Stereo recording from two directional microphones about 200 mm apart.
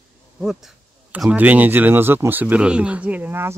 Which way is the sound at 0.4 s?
Centre (ahead or behind).